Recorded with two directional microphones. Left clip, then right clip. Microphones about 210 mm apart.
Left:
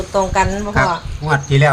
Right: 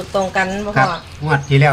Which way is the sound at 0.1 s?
45° left (ahead or behind).